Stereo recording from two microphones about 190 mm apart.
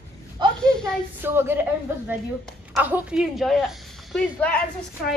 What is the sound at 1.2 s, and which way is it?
Speech, 10° right (ahead or behind).